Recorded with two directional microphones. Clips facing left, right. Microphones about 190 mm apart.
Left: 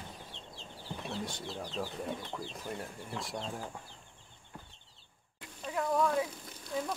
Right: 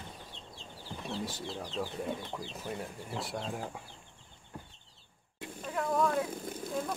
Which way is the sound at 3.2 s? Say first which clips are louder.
Right 3 dB; 5° right (ahead or behind).